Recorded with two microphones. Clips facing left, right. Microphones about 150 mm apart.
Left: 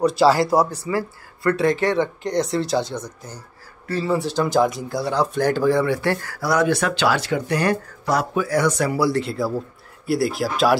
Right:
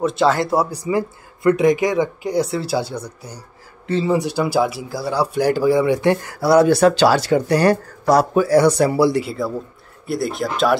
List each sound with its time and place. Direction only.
0.0 s speech: centre (ahead or behind)
0.7 s speech: 15° right (ahead or behind)
3.8 s speech: 20° right (ahead or behind)
9.1 s speech: 5° right (ahead or behind)